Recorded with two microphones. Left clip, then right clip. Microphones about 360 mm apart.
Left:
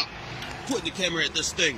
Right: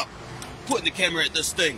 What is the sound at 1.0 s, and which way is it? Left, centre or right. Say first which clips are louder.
Speech: right 3 dB; right.